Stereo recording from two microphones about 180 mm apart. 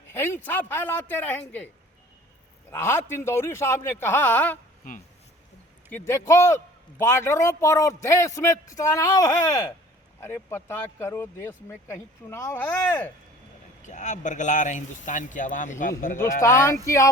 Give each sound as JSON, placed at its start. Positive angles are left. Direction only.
{"t": 0.1, "sound": "speech", "side_deg": 10}
{"t": 2.7, "sound": "speech", "side_deg": 15}
{"t": 5.9, "sound": "speech", "side_deg": 15}
{"t": 13.8, "sound": "speech", "side_deg": 40}
{"t": 16.4, "sound": "speech", "side_deg": 15}